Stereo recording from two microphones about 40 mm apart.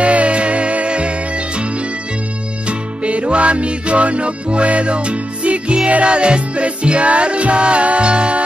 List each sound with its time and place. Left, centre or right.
0.0 s music: right
3.0 s music: right